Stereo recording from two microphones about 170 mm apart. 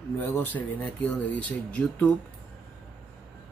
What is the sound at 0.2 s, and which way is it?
Speech, 10° left (ahead or behind).